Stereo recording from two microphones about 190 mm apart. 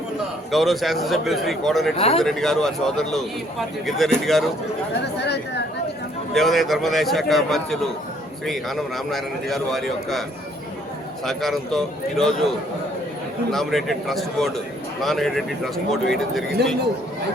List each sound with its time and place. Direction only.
0.5 s a man's voice: centre (ahead or behind)
2.0 s speech: 30° left (ahead or behind)
2.2 s a man's voice: centre (ahead or behind)
5.2 s a woman's voice: 60° left (ahead or behind)
6.3 s a man's voice: centre (ahead or behind)
11.3 s a man's voice: centre (ahead or behind)
13.5 s a man's voice: centre (ahead or behind)
16.6 s speech: 60° right (ahead or behind)